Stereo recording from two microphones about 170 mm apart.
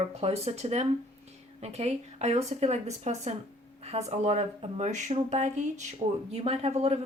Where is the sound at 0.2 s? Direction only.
40° right (ahead or behind).